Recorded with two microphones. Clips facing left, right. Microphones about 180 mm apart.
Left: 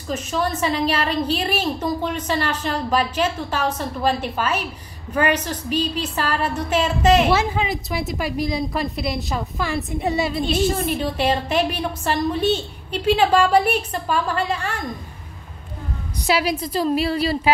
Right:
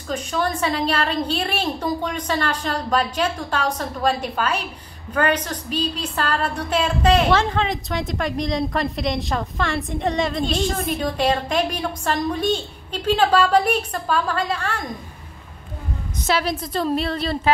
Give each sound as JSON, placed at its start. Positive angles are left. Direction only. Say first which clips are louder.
{"t": 0.1, "sound": "a woman's voice", "louder": "even", "side_deg": 5}
{"t": 16.3, "sound": "a woman's voice", "louder": "left 2 dB", "side_deg": 10}